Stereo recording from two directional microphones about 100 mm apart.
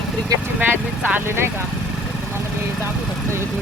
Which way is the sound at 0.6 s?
20° right (ahead or behind).